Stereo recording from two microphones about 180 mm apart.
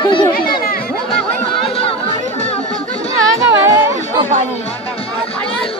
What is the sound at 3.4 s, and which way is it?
Chatter, 15° right (ahead or behind).